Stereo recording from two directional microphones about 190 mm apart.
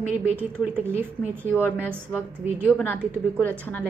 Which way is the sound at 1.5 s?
10° left (ahead or behind).